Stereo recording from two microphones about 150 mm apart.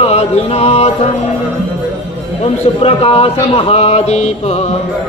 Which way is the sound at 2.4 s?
40° left (ahead or behind).